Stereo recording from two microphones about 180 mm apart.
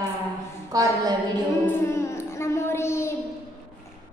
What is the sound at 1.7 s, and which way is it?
Music, 15° left (ahead or behind).